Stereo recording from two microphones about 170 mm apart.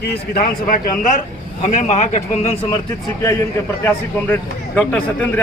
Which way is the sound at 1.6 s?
40° left (ahead or behind).